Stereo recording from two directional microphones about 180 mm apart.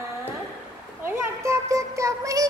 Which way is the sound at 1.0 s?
15° right (ahead or behind).